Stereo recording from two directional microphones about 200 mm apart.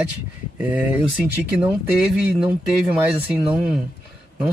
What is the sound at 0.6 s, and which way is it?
Speech, 5° right (ahead or behind).